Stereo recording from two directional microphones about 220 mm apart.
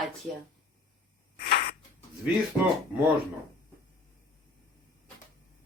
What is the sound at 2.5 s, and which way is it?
Speech, 15° left (ahead or behind).